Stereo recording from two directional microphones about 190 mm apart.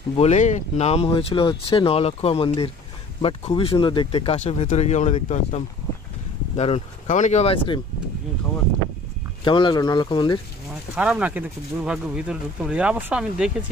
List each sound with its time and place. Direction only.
0.1 s speech: 35° left (ahead or behind)
9.4 s speech: 25° left (ahead or behind)
11.0 s speech: 5° right (ahead or behind)